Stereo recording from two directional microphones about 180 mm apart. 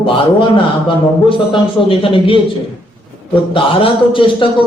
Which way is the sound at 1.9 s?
30° left (ahead or behind).